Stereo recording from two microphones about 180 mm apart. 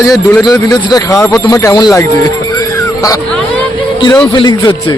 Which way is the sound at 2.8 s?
20° left (ahead or behind).